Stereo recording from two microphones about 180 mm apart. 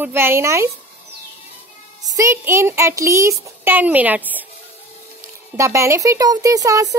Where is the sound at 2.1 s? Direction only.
15° right (ahead or behind).